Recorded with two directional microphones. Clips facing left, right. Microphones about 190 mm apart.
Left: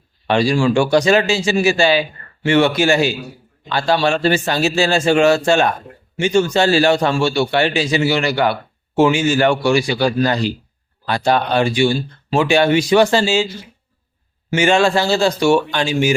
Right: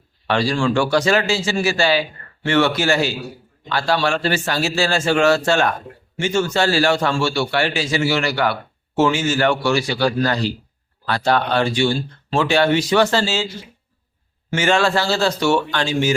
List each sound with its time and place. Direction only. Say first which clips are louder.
0.3 s a man's voice: left 4 dB; 15° left (ahead or behind)
14.5 s speech: left 3 dB; 15° left (ahead or behind)